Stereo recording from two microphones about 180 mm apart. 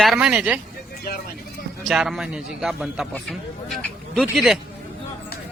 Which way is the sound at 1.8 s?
Centre (ahead or behind).